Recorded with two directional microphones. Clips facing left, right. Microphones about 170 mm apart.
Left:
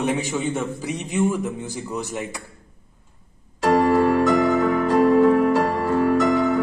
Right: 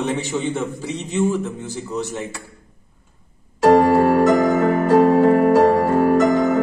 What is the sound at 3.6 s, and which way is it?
Music, 45° right (ahead or behind).